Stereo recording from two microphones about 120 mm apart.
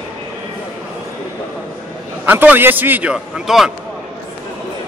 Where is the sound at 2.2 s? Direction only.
15° right (ahead or behind).